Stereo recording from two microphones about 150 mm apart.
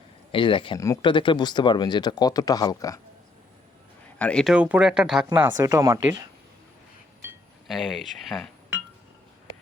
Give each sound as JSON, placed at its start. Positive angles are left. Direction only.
{"t": 0.3, "sound": "speech", "side_deg": 35}
{"t": 4.2, "sound": "speech", "side_deg": 5}
{"t": 4.5, "sound": "speech", "side_deg": -10}
{"t": 7.7, "sound": "speech", "side_deg": 0}